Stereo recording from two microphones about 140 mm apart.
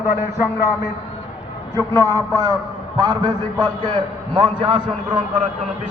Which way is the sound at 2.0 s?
25° right (ahead or behind).